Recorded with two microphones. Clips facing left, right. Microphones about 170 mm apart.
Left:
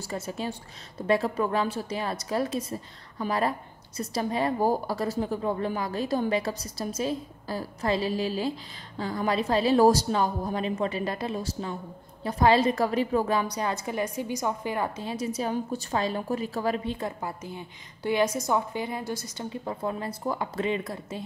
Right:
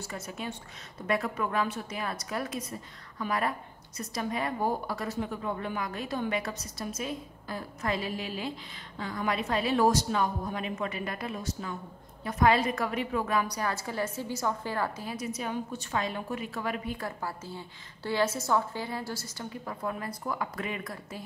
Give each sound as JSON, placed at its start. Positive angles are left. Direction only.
{"t": 0.0, "sound": "a woman's voice", "side_deg": 30}